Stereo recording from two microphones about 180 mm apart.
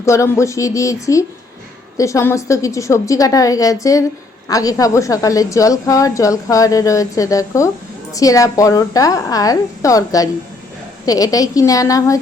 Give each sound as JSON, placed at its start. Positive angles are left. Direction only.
{"t": 0.0, "sound": "a woman's voice", "side_deg": 15}